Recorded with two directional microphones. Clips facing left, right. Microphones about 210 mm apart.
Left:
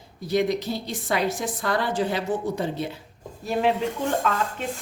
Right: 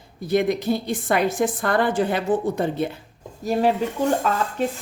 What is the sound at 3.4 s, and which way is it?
Speech, 40° right (ahead or behind).